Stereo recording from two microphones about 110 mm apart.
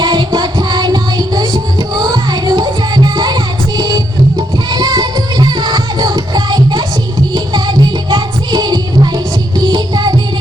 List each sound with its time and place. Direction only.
0.0 s music: 40° right (ahead or behind)